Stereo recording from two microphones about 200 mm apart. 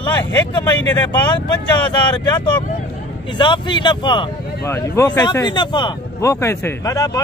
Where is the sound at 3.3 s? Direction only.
25° left (ahead or behind).